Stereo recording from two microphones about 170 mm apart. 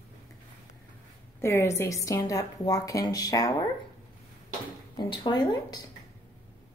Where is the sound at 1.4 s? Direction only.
15° left (ahead or behind).